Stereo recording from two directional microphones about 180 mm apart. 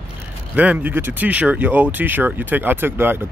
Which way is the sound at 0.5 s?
5° right (ahead or behind).